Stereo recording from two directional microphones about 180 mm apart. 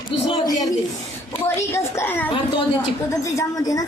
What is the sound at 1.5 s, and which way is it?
A child's voice, 15° left (ahead or behind).